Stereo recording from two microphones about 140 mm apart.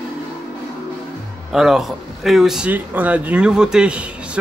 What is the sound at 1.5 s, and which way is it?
A man's voice, 5° right (ahead or behind).